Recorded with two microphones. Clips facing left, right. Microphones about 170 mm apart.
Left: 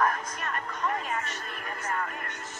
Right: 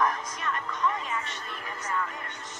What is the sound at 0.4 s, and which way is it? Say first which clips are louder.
Music: right 2 dB; 45° left (ahead or behind).